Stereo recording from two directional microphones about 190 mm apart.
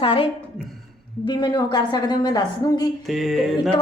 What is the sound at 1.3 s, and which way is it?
A woman's voice, 20° left (ahead or behind).